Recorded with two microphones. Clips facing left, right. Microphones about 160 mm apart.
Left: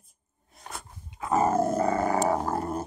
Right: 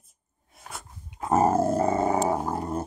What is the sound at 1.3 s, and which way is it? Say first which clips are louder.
Dog: right 2 dB; 35° right (ahead or behind).